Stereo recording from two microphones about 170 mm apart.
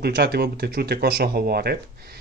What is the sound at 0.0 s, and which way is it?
Speech, 70° right (ahead or behind).